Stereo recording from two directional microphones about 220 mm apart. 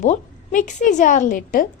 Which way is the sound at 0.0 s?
35° left (ahead or behind).